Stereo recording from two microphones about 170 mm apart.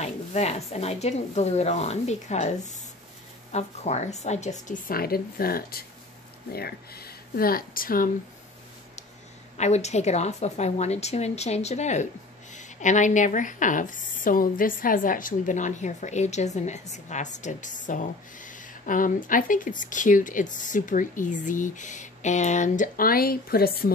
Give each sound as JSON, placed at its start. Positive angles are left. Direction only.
{"t": 0.0, "sound": "a woman's voice", "side_deg": 40}
{"t": 9.6, "sound": "a woman's voice", "side_deg": 40}